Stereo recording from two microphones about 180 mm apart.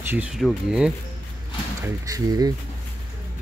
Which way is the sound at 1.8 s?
20° right (ahead or behind).